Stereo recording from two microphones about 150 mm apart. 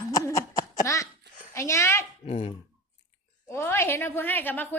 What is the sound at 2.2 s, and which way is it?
Speech, 40° left (ahead or behind).